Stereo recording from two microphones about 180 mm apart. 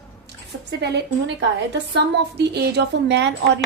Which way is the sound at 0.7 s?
70° right (ahead or behind).